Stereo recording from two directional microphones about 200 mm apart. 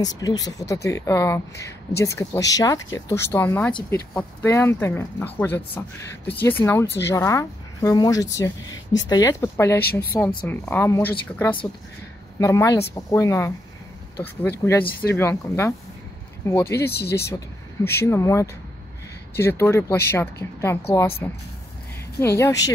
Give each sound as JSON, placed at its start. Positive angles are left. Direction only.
{"t": 0.0, "sound": "speech", "side_deg": 20}
{"t": 16.8, "sound": "speech", "side_deg": 55}
{"t": 18.0, "sound": "speech", "side_deg": 15}